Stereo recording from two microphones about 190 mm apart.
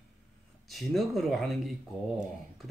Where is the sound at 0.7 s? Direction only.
Centre (ahead or behind).